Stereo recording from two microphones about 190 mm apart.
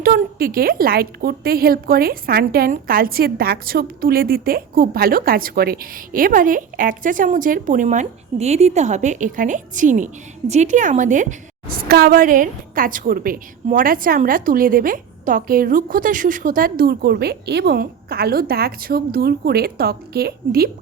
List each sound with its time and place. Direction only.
0.0 s a woman's voice: 50° right (ahead or behind)